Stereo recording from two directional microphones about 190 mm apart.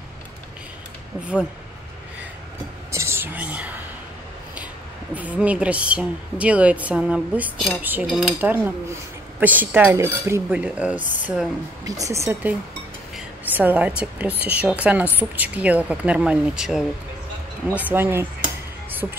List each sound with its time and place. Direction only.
2.9 s speech: 15° right (ahead or behind)
5.1 s a woman's voice: 10° right (ahead or behind)